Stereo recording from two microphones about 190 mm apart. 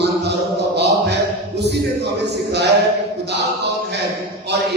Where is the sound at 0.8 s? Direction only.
60° right (ahead or behind).